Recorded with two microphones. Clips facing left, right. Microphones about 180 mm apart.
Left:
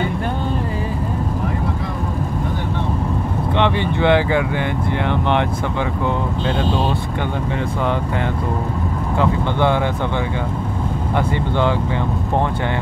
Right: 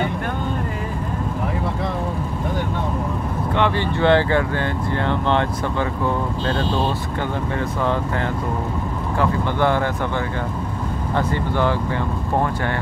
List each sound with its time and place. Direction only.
3.5 s speech: 20° left (ahead or behind)
9.2 s speech: 20° left (ahead or behind)
11.1 s speech: 20° left (ahead or behind)